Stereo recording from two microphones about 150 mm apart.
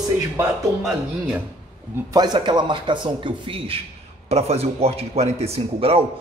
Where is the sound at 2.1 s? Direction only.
30° right (ahead or behind).